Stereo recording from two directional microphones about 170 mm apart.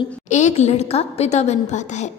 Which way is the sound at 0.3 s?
45° left (ahead or behind).